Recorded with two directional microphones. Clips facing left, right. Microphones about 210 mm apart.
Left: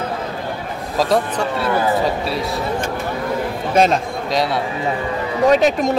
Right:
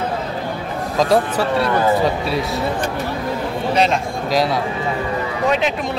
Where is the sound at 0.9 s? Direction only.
Centre (ahead or behind).